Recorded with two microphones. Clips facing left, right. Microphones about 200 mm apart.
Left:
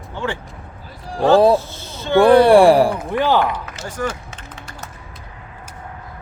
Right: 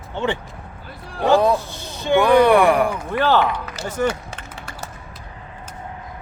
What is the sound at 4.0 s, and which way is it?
Speech, 25° right (ahead or behind).